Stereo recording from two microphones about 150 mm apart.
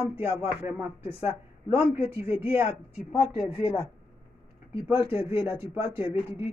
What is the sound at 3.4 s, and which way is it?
Speech, 25° left (ahead or behind).